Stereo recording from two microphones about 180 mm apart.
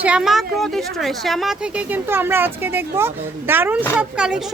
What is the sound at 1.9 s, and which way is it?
A woman's voice, 10° right (ahead or behind).